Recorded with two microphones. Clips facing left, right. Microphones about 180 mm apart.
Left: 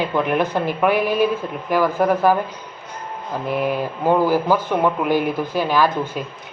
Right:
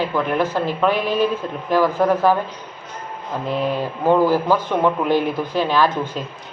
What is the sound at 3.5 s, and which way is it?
Speech, 10° left (ahead or behind).